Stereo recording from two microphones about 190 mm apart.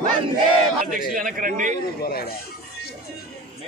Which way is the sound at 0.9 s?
45° right (ahead or behind).